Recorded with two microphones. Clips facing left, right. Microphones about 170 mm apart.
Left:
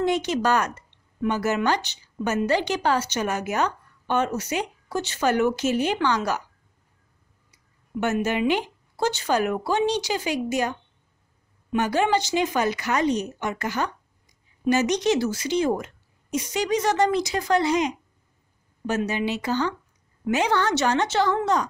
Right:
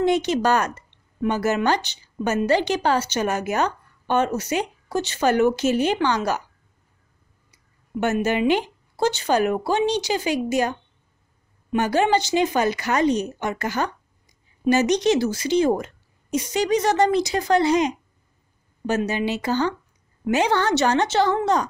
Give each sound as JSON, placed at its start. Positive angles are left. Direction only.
{"t": 0.0, "sound": "a woman's voice", "side_deg": -25}
{"t": 8.0, "sound": "a woman's voice", "side_deg": -35}